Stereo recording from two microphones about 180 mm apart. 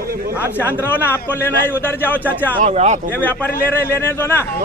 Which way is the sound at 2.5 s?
45° right (ahead or behind).